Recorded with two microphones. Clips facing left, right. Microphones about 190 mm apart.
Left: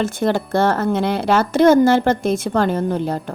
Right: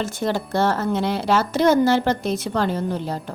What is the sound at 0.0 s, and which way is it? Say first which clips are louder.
Speech: left 5 dB; 55° left (ahead or behind).